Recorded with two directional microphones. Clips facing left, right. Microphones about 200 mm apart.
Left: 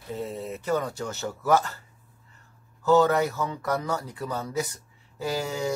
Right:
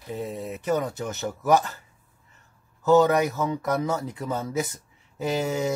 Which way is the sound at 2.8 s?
20° right (ahead or behind).